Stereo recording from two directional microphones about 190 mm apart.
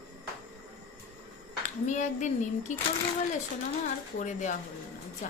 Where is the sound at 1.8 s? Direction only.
40° left (ahead or behind).